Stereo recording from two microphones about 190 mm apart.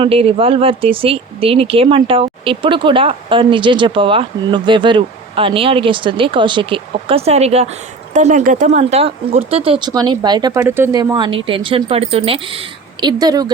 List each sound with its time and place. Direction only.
0.0 s speech: 30° right (ahead or behind); by 11.0 s 15° right (ahead or behind)
11.1 s speech: 25° right (ahead or behind)